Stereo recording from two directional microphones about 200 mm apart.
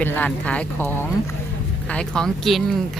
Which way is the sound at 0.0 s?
10° left (ahead or behind).